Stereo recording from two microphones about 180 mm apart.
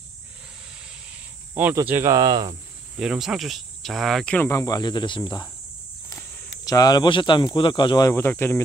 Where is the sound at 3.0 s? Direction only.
Centre (ahead or behind); by 5.5 s 25° left (ahead or behind).